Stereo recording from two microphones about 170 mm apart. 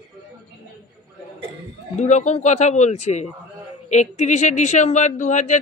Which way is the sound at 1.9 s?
45° left (ahead or behind).